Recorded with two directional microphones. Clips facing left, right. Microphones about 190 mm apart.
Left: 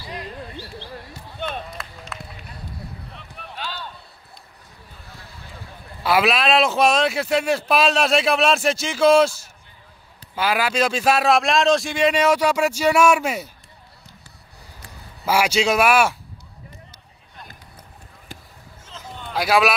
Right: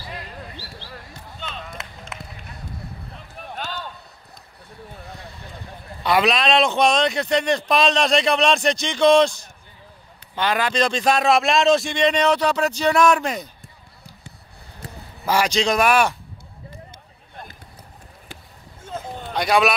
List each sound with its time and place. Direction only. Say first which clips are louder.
1.4 s basketball bounce: left 7 dB; 55° left (ahead or behind)
1.8 s run: left 1 dB; 20° right (ahead or behind)
3.3 s basketball bounce: right 2 dB; 45° right (ahead or behind)
6.0 s a man's voice: even; 5° left (ahead or behind)
15.2 s a man's voice: left 1 dB; 10° left (ahead or behind)
18.9 s a sound: right 6 dB; 50° right (ahead or behind)
19.3 s a man's voice: even; centre (ahead or behind)